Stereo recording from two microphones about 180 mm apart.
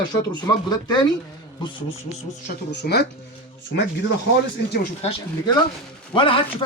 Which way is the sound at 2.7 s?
65° left (ahead or behind).